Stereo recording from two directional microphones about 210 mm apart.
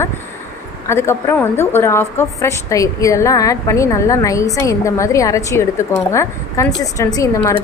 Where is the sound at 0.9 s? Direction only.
10° left (ahead or behind).